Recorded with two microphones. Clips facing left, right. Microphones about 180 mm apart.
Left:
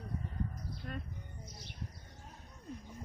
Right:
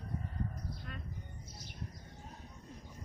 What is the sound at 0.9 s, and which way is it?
Music, 40° left (ahead or behind).